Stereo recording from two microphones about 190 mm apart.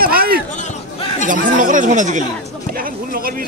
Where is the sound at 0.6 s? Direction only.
40° left (ahead or behind).